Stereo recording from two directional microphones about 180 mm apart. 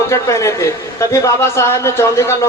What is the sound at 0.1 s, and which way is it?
A man's voice, 15° left (ahead or behind).